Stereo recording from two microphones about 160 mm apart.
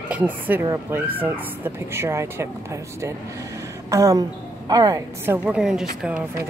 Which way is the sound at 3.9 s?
20° right (ahead or behind).